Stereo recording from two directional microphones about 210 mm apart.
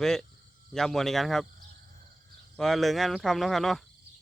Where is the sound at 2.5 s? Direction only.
Centre (ahead or behind).